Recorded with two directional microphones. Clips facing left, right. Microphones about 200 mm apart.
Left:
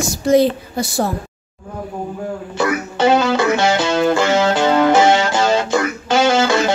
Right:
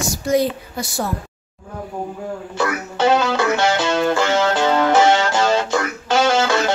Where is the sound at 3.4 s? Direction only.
Centre (ahead or behind).